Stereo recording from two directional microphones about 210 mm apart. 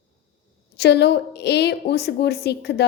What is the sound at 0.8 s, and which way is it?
A woman's voice, 55° left (ahead or behind).